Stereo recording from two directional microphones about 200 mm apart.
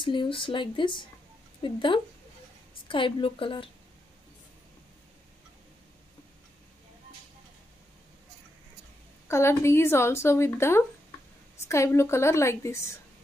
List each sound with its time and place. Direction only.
0.0 s speech: 25° left (ahead or behind)
9.3 s a woman's voice: 15° left (ahead or behind)